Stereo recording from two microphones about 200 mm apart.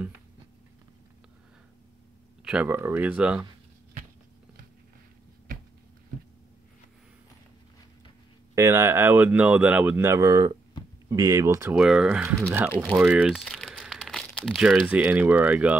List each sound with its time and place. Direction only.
2.4 s speech: 5° right (ahead or behind)
8.5 s speech: 15° right (ahead or behind)
11.7 s speech: 5° right (ahead or behind)